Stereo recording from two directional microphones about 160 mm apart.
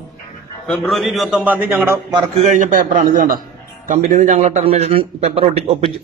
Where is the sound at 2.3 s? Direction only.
50° right (ahead or behind).